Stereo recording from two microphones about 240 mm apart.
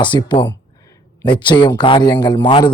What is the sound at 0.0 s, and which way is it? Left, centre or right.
A man's voice, centre.